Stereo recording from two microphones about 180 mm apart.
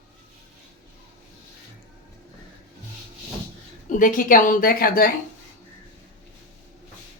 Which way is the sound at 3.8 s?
50° left (ahead or behind).